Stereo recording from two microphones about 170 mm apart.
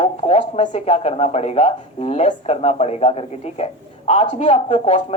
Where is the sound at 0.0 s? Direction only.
40° left (ahead or behind).